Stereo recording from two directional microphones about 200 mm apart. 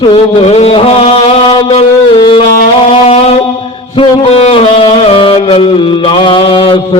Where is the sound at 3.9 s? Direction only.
30° left (ahead or behind).